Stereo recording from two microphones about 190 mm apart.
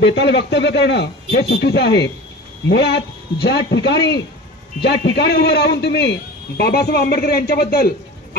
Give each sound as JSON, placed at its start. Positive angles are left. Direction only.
{"t": 0.0, "sound": "a man's voice", "side_deg": 65}